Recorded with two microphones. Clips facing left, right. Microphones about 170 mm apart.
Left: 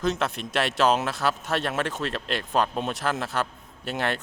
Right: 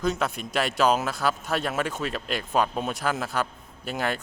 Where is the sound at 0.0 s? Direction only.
Centre (ahead or behind).